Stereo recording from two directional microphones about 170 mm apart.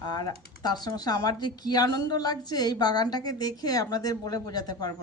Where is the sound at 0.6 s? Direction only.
25° left (ahead or behind).